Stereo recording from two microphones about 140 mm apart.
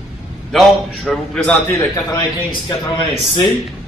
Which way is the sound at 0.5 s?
5° left (ahead or behind).